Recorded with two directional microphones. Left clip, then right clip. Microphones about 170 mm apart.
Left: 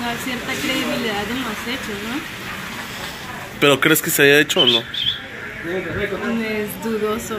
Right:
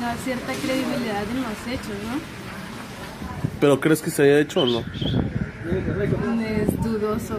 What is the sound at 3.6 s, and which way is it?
Speech, 20° right (ahead or behind).